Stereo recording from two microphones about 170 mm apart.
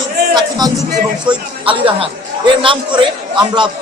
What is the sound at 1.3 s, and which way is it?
A man's voice, 30° right (ahead or behind).